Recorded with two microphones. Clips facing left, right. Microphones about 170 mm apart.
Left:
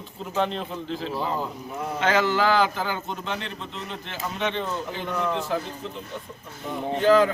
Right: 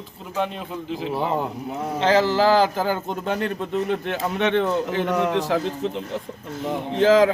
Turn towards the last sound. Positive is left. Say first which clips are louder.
# right 3 dB
turn(degrees=-90)